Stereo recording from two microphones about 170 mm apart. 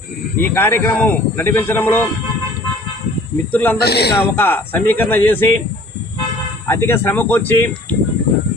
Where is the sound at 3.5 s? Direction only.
10° left (ahead or behind).